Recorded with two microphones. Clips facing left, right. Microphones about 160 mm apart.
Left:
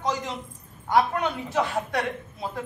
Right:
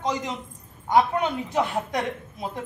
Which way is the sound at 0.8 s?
20° right (ahead or behind).